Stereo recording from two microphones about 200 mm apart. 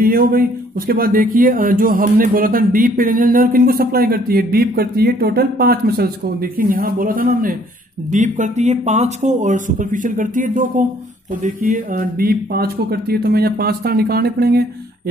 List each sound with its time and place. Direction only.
0.0 s speech: 45° right (ahead or behind)